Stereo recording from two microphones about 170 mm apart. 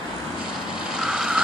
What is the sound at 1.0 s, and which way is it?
Vehicle, 5° right (ahead or behind).